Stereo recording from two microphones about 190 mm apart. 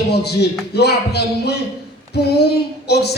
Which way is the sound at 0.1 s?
60° left (ahead or behind).